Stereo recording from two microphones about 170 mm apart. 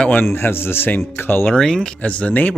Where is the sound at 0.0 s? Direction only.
10° left (ahead or behind).